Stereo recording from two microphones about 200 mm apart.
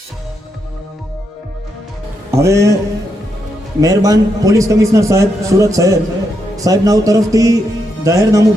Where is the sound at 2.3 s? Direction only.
15° right (ahead or behind).